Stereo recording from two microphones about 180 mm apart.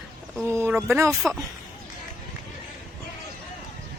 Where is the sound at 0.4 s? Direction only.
10° right (ahead or behind).